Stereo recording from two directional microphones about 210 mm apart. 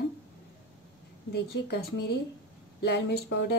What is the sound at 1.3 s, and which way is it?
A woman's voice, 50° left (ahead or behind).